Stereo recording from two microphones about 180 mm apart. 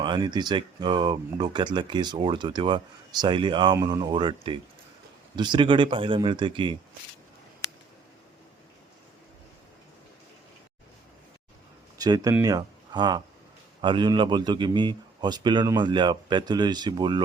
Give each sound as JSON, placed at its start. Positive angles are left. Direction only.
{"t": 0.0, "sound": "speech", "side_deg": -25}
{"t": 11.9, "sound": "speech", "side_deg": -20}